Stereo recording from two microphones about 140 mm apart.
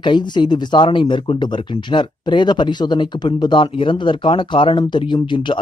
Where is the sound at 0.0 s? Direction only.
35° left (ahead or behind).